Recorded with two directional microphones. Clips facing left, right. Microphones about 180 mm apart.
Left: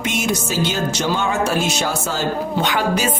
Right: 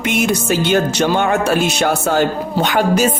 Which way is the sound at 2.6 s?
45° right (ahead or behind).